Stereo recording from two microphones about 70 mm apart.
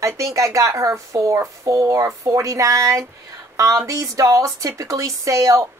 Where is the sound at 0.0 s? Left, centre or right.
Right.